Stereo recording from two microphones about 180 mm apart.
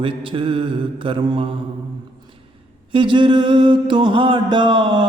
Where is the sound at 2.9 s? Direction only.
25° right (ahead or behind).